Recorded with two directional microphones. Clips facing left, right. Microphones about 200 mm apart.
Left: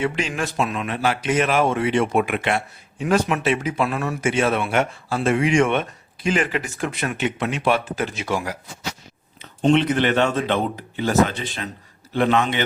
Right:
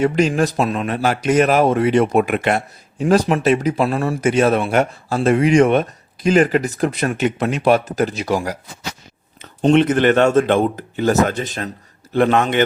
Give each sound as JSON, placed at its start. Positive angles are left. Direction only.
{"t": 0.0, "sound": "speech", "side_deg": -40}